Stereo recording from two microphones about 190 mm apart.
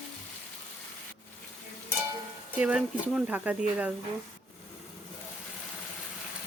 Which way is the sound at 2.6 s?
5° right (ahead or behind).